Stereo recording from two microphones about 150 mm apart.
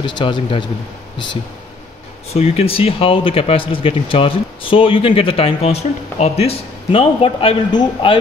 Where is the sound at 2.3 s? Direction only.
45° left (ahead or behind).